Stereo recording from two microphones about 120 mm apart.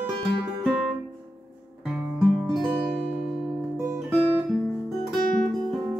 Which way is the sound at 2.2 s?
Centre (ahead or behind).